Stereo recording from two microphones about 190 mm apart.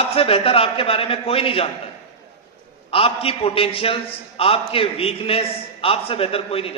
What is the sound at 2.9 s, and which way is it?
A man's voice, 30° left (ahead or behind).